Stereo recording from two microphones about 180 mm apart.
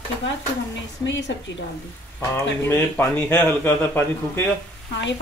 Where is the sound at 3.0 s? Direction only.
10° left (ahead or behind).